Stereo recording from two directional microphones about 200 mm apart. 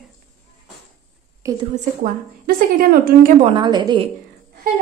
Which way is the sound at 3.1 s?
50° right (ahead or behind).